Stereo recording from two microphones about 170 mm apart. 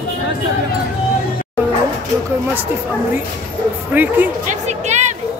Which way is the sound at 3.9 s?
10° right (ahead or behind).